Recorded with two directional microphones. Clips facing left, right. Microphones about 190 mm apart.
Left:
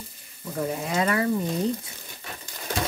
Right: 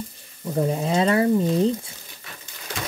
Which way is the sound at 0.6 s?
25° right (ahead or behind).